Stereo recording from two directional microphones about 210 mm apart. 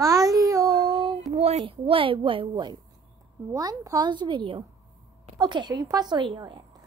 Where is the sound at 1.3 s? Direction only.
30° right (ahead or behind).